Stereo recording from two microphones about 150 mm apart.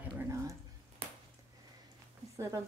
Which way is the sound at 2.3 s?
20° right (ahead or behind).